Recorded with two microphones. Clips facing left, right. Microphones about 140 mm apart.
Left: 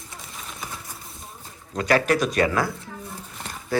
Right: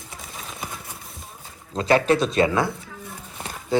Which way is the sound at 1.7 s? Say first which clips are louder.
Right 2 dB; 25° right (ahead or behind).